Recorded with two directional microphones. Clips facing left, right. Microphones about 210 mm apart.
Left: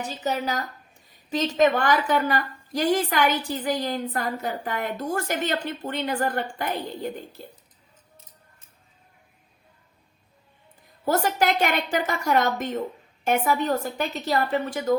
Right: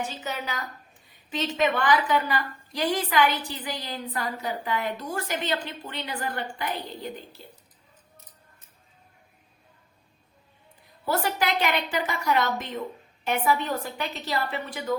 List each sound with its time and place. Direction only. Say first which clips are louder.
0.0 s a woman's voice: left 5 dB; 40° left (ahead or behind)
11.0 s a woman's voice: left 4 dB; 45° left (ahead or behind)